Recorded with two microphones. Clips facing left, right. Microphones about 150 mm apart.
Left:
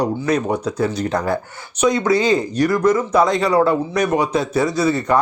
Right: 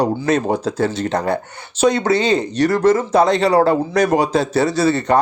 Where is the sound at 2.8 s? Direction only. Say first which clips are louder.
Right 3 dB; 80° right.